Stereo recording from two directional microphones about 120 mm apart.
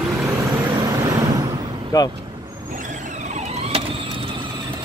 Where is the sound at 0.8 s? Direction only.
30° right (ahead or behind).